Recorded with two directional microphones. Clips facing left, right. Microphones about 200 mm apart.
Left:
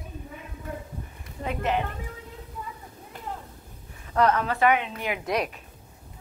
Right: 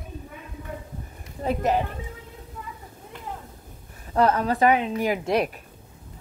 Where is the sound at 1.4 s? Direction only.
40° right (ahead or behind).